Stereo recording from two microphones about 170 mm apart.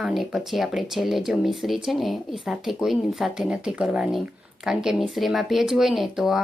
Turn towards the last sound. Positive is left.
turn(degrees=0)  # may be behind; listen again after turning